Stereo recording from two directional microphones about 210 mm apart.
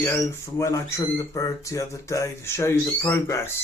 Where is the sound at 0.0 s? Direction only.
10° left (ahead or behind).